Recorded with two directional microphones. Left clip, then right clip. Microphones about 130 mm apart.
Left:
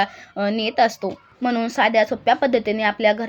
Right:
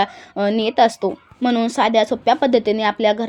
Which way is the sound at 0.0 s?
30° right (ahead or behind).